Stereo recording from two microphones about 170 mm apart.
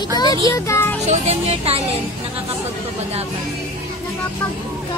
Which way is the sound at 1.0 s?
40° right (ahead or behind).